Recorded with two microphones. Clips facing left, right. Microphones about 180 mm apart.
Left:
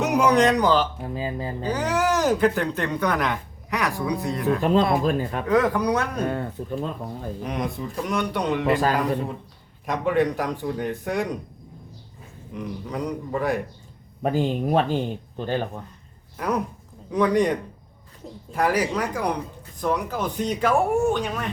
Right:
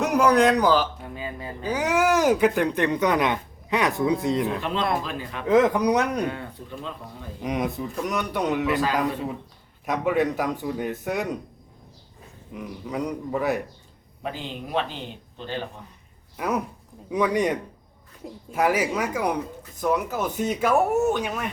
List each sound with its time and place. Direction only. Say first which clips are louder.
0.0 s speech: even; centre (ahead or behind)
1.0 s speech: left 5 dB; 30° left (ahead or behind)
1.6 s speech: right 2 dB; 10° right (ahead or behind)
4.7 s a man's voice: left 6 dB; 45° left (ahead or behind)
5.5 s speech: right 3 dB; 20° right (ahead or behind)
6.2 s a man's voice: left 4 dB; 45° left (ahead or behind)
7.4 s speech: right 3 dB; 10° right (ahead or behind)
8.7 s a man's voice: left 2 dB; 45° left (ahead or behind)
9.8 s speech: left 1 dB; 5° right (ahead or behind)
12.5 s speech: even; 5° right (ahead or behind)
14.2 s a man's voice: left 10 dB; 45° left (ahead or behind)
16.4 s speech: left 1 dB; 10° right (ahead or behind)